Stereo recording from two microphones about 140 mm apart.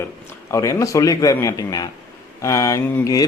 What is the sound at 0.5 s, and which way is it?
Speech, 25° left (ahead or behind).